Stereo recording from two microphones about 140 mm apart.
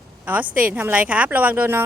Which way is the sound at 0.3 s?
10° right (ahead or behind).